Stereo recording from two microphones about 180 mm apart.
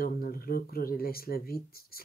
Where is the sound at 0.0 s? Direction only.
55° left (ahead or behind).